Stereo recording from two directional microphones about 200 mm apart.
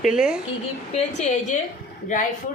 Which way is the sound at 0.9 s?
35° left (ahead or behind).